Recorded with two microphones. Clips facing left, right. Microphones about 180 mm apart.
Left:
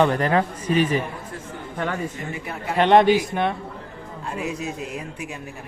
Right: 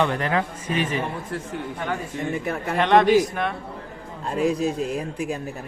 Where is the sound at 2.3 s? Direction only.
50° right (ahead or behind).